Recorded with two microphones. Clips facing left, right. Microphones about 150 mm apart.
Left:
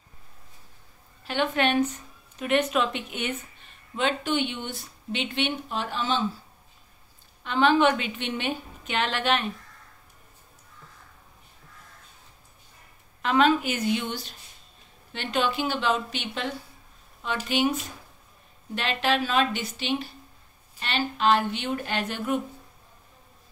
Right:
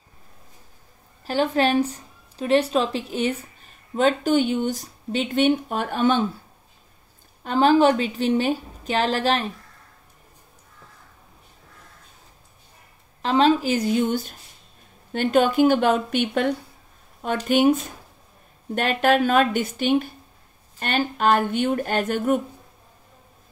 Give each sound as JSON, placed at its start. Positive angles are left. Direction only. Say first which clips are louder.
{"t": 1.2, "sound": "speech", "louder": "right 4 dB", "side_deg": -35}
{"t": 7.4, "sound": "a woman's voice", "louder": "right 4 dB", "side_deg": -40}
{"t": 13.2, "sound": "a woman's voice", "louder": "right 3 dB", "side_deg": -30}